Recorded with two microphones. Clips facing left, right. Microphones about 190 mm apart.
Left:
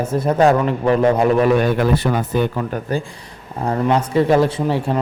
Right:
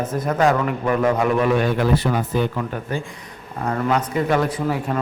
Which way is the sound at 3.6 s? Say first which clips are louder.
Left 3 dB; 30° left (ahead or behind).